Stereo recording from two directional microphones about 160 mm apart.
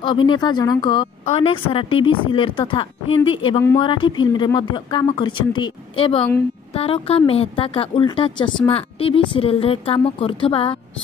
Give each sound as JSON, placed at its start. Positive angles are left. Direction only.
{"t": 0.0, "sound": "a woman's voice", "side_deg": 30}